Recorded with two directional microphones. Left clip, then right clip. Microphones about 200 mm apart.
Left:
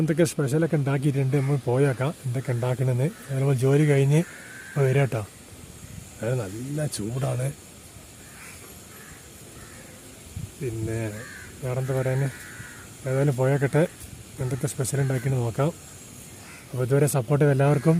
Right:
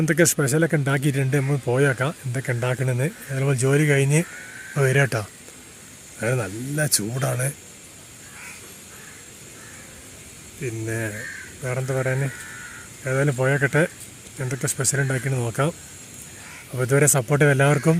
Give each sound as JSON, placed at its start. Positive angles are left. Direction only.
{"t": 0.0, "sound": "speech", "side_deg": 0}
{"t": 6.1, "sound": "speech", "side_deg": -10}
{"t": 10.6, "sound": "speech", "side_deg": 0}
{"t": 16.7, "sound": "speech", "side_deg": -5}